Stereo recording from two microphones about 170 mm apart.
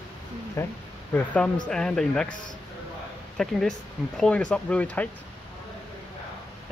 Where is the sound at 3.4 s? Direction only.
Centre (ahead or behind).